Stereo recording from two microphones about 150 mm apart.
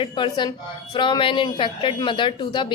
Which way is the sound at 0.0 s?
30° left (ahead or behind).